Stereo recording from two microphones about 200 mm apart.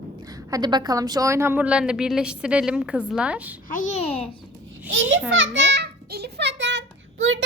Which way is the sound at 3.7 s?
40° left (ahead or behind).